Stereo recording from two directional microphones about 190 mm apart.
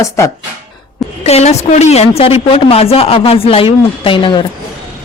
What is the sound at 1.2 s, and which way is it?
A woman's voice, 35° left (ahead or behind).